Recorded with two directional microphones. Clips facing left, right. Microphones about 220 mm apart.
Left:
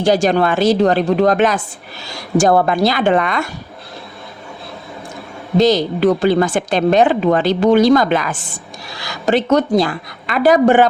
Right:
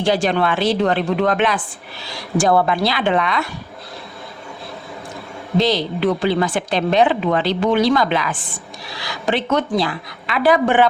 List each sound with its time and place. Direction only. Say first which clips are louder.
0.0 s a woman's voice: left 4 dB; 45° left (ahead or behind)
5.5 s a woman's voice: left 5 dB; 45° left (ahead or behind)